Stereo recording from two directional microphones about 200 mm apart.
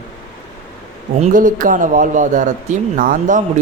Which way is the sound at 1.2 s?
40° right (ahead or behind).